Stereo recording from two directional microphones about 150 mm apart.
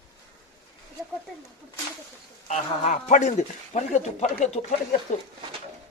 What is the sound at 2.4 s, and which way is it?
Speech, 50° left (ahead or behind).